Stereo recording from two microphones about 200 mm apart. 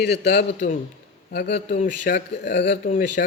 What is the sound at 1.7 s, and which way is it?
Speech, 40° left (ahead or behind).